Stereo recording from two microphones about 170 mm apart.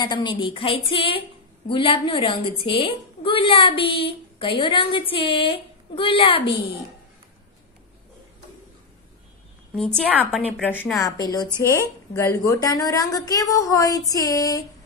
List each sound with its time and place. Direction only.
0.0 s a woman's voice: 25° left (ahead or behind)
9.8 s a woman's voice: 5° left (ahead or behind); by 14.6 s 20° left (ahead or behind)